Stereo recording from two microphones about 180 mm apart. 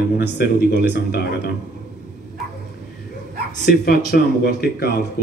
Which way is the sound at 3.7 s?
55° left (ahead or behind).